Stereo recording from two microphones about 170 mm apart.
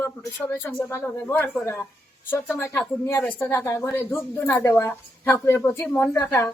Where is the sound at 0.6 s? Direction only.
10° left (ahead or behind).